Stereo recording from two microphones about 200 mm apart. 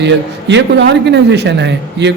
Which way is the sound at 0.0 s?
60° right (ahead or behind).